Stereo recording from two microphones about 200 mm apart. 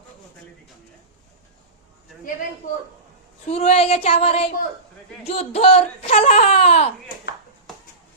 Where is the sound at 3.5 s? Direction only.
30° left (ahead or behind).